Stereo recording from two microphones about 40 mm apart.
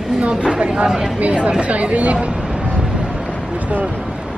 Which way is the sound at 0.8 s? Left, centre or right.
Centre.